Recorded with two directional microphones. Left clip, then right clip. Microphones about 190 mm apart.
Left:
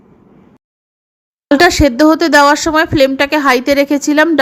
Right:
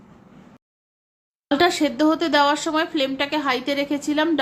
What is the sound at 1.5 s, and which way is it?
Speech, 35° left (ahead or behind).